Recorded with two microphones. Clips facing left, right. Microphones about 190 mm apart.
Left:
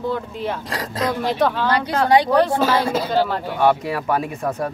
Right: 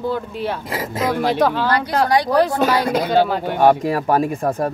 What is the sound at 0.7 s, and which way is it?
Speech, 25° right (ahead or behind).